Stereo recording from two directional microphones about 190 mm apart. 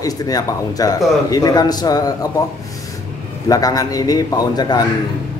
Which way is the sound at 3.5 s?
20° left (ahead or behind).